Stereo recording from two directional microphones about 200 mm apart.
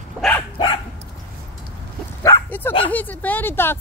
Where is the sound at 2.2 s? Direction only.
10° left (ahead or behind).